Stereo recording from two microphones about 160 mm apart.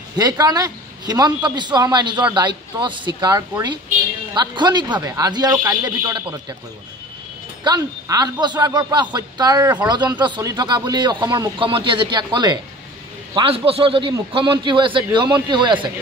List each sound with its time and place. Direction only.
0.2 s speech: 25° right (ahead or behind)
7.6 s a man's voice: 25° right (ahead or behind)